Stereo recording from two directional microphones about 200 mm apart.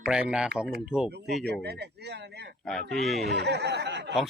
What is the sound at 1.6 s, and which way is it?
Speech, 55° right (ahead or behind).